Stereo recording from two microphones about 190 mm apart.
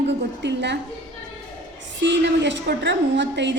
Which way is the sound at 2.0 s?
70° right (ahead or behind).